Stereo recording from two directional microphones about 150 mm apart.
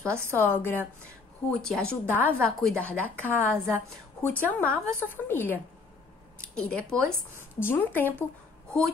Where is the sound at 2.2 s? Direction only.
10° left (ahead or behind).